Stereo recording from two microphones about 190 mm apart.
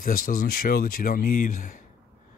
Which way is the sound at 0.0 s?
50° left (ahead or behind).